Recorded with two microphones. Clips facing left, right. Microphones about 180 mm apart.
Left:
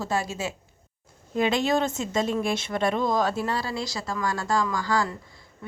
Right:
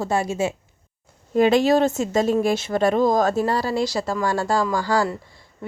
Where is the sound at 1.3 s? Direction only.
40° right (ahead or behind).